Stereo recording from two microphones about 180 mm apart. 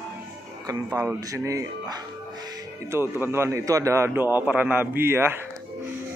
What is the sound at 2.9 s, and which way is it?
A man's voice, 10° right (ahead or behind).